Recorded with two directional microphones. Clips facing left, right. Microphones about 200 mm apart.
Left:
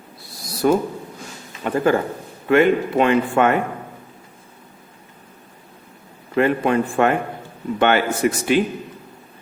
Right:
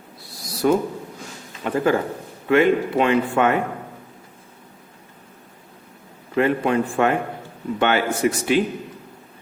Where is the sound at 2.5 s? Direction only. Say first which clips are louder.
Left 1 dB; 50° left (ahead or behind).